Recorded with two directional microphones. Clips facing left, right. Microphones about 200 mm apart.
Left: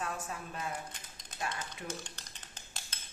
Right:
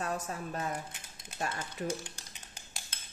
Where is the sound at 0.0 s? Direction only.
40° right (ahead or behind).